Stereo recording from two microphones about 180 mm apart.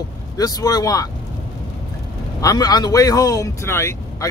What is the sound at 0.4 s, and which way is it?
Speech, 20° left (ahead or behind).